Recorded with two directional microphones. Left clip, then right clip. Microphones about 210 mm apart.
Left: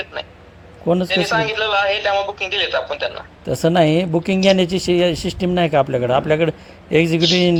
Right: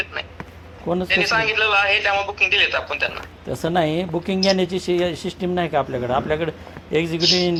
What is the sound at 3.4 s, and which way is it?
Speech, 50° left (ahead or behind).